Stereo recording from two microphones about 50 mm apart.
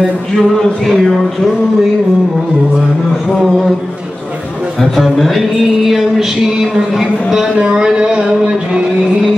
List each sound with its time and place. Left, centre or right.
0.4 s music: centre
3.3 s music: centre
4.9 s music: centre
7.0 s speech: centre
7.5 s speech: centre